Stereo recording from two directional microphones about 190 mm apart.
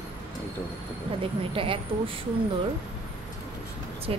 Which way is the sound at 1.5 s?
30° right (ahead or behind).